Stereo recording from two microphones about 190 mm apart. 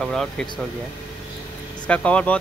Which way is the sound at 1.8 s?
5° left (ahead or behind).